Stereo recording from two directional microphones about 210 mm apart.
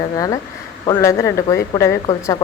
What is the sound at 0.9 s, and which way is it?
Speech, 15° left (ahead or behind).